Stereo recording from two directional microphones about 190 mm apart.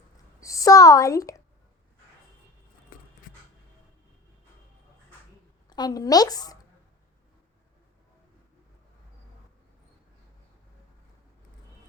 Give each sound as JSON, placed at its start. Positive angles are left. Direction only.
{"t": 0.3, "sound": "a child's voice", "side_deg": 15}
{"t": 5.6, "sound": "a woman's voice", "side_deg": 20}